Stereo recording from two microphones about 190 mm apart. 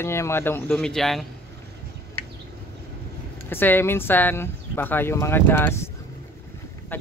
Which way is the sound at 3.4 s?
10° left (ahead or behind).